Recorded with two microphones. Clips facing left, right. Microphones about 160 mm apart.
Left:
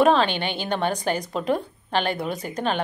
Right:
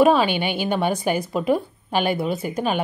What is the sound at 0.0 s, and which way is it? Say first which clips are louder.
Speech: right 2 dB; 10° right (ahead or behind).